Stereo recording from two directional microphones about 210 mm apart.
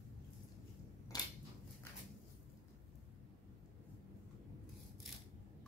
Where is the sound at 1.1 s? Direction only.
20° left (ahead or behind).